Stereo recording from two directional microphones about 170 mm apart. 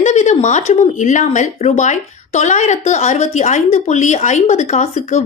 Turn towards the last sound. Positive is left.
turn(degrees=45)  # may be behind; listen again after turning